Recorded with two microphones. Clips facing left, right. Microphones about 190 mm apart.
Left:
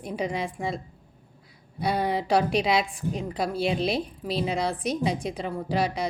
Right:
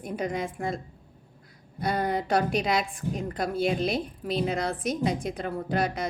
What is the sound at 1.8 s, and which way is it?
Speech, centre (ahead or behind).